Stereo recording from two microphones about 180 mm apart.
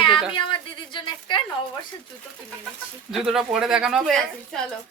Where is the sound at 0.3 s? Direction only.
25° left (ahead or behind).